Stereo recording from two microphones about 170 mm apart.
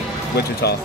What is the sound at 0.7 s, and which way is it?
Speech, 75° left (ahead or behind).